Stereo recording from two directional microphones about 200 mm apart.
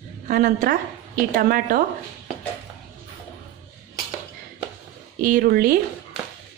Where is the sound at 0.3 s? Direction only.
45° right (ahead or behind).